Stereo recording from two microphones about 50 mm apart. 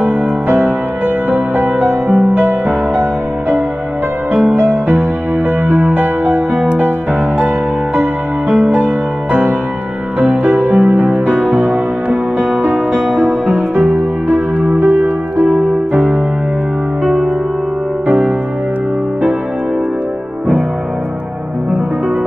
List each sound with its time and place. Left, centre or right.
0.0 s music: right
4.5 s music: right
12.9 s music: centre
14.3 s music: right